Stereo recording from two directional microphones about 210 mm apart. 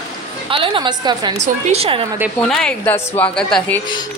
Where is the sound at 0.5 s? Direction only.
25° right (ahead or behind).